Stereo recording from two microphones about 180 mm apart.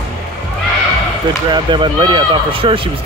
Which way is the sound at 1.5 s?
25° right (ahead or behind).